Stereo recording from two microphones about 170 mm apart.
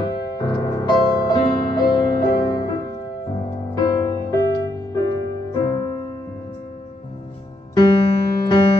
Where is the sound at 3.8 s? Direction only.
25° left (ahead or behind).